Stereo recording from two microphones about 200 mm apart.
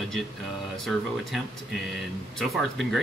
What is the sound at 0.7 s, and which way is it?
Speech, centre (ahead or behind).